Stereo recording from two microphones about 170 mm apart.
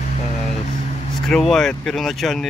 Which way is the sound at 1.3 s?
Centre (ahead or behind).